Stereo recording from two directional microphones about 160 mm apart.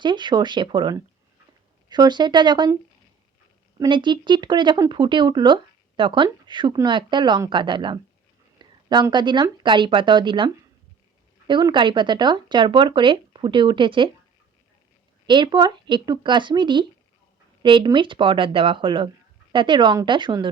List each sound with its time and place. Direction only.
0.0 s speech: 30° right (ahead or behind)
3.8 s speech: 30° right (ahead or behind)
15.3 s speech: 30° right (ahead or behind)